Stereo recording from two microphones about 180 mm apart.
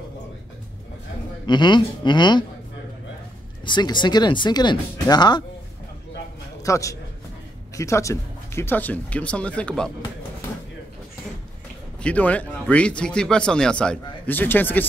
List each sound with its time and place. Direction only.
1.4 s speech: 25° left (ahead or behind)
3.6 s speech: 25° left (ahead or behind)
6.6 s speech: 20° left (ahead or behind)
12.0 s speech: 5° left (ahead or behind)